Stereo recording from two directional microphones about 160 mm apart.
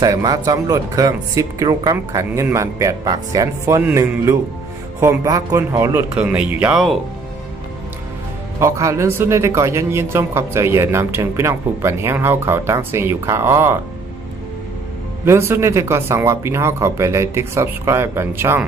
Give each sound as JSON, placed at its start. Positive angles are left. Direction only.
{"t": 0.0, "sound": "speech", "side_deg": -25}
{"t": 8.5, "sound": "speech", "side_deg": -20}
{"t": 15.2, "sound": "speech", "side_deg": -15}